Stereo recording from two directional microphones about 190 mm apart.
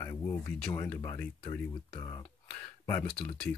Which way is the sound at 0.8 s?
10° left (ahead or behind).